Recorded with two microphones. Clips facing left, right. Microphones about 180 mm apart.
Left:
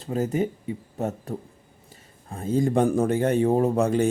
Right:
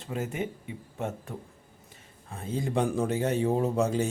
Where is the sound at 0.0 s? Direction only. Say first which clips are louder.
Left 7 dB; 35° left (ahead or behind).